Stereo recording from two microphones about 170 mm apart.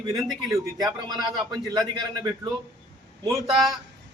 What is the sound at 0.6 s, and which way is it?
Speech, 20° right (ahead or behind).